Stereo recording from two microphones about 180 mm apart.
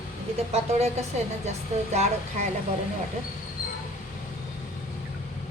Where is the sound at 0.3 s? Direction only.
35° right (ahead or behind).